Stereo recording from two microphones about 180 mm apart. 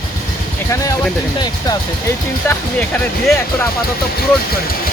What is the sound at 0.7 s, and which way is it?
Speech, 15° left (ahead or behind).